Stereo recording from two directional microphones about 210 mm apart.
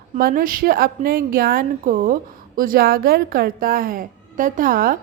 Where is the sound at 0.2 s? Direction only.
45° right (ahead or behind).